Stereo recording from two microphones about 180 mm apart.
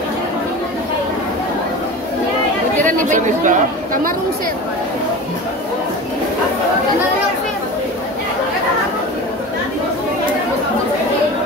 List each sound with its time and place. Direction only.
2.8 s chatter: 45° right (ahead or behind)